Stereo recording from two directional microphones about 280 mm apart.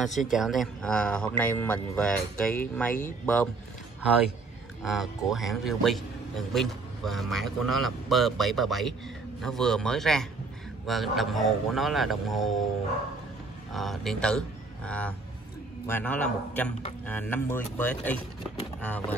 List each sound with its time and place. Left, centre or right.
0.3 s a man's voice: centre
4.8 s a man's voice: centre
13.7 s a man's voice: centre